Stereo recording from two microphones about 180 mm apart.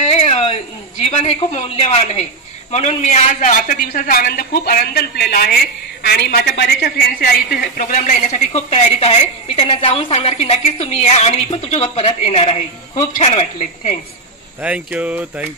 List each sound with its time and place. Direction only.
0.0 s a sound: 35° left (ahead or behind)
1.1 s a woman's voice: 35° left (ahead or behind); by 7.2 s 60° left (ahead or behind)
7.7 s a woman's voice: 50° left (ahead or behind)
14.6 s speech: 5° right (ahead or behind)